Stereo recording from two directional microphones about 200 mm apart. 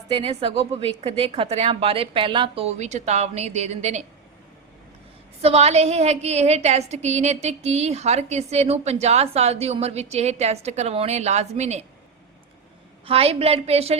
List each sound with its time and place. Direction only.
0.1 s a woman's voice: 30° right (ahead or behind)
5.4 s a woman's voice: 30° right (ahead or behind)
13.1 s a woman's voice: 30° right (ahead or behind)